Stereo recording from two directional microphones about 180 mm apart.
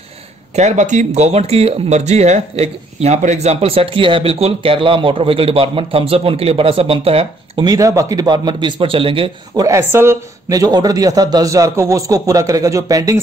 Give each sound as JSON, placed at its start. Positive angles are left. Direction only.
{"t": 0.6, "sound": "speech", "side_deg": -40}
{"t": 9.7, "sound": "speech", "side_deg": -15}